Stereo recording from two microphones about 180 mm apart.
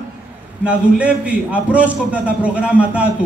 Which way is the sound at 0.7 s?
5° right (ahead or behind).